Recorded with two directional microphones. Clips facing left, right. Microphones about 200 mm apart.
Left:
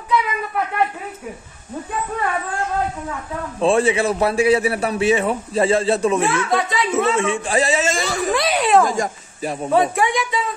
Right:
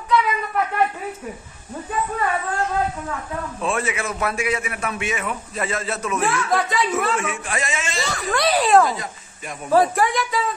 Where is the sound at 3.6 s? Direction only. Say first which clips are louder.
Left 9 dB; 30° left (ahead or behind).